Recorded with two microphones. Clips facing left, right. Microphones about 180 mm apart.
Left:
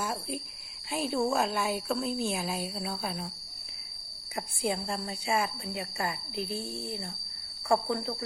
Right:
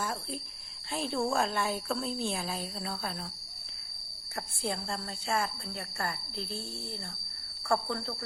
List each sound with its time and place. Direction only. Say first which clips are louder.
0.0 s a woman's voice: left 2 dB; 10° left (ahead or behind)
4.4 s a woman's voice: left 4 dB; 10° left (ahead or behind)